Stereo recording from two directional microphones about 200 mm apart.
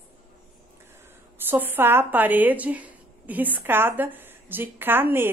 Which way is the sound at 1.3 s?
10° right (ahead or behind).